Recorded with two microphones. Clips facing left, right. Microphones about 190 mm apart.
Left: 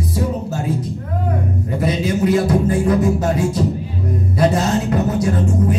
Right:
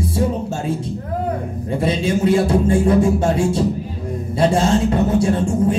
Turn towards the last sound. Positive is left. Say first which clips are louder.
# right 1 dB
turn(degrees=-30)  # may be behind; listen again after turning